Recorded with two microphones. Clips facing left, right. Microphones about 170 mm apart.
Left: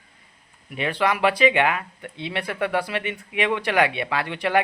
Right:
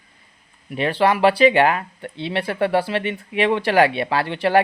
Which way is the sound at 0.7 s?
30° right (ahead or behind).